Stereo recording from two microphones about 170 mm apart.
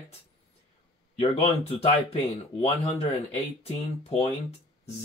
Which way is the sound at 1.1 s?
35° left (ahead or behind).